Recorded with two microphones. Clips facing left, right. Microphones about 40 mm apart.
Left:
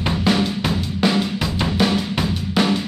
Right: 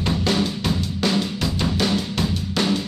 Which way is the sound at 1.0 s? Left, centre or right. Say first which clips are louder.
Left 4 dB; centre.